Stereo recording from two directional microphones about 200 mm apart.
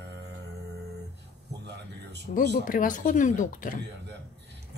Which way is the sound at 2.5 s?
45° left (ahead or behind).